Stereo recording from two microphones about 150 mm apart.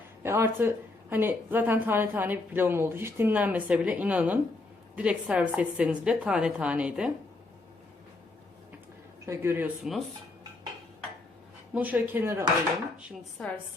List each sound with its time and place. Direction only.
0.2 s a woman's voice: 15° right (ahead or behind)
9.2 s a woman's voice: 20° right (ahead or behind)
9.8 s dishes: centre (ahead or behind)
11.7 s a woman's voice: 10° right (ahead or behind)